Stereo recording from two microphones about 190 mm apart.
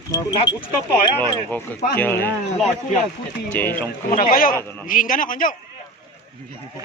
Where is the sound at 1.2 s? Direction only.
10° left (ahead or behind).